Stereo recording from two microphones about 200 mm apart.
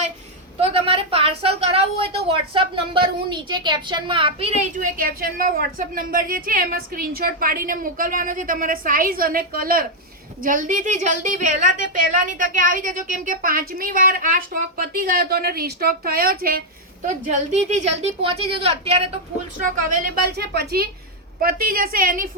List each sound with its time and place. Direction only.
0.6 s a woman's voice: 30° right (ahead or behind); by 16.6 s 50° right (ahead or behind)
17.1 s a woman's voice: 35° right (ahead or behind)